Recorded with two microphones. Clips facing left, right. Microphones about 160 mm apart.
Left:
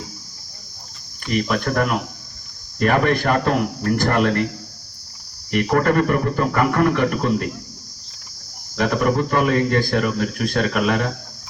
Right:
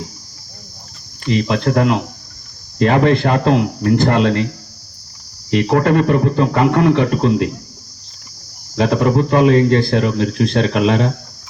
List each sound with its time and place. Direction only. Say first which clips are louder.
1.3 s a man's voice: right 5 dB; 25° right (ahead or behind)
5.5 s a man's voice: right 4 dB; 25° right (ahead or behind)
8.8 s a man's voice: right 4 dB; 25° right (ahead or behind)